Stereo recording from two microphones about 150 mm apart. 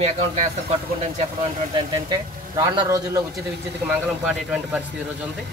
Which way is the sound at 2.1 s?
25° right (ahead or behind).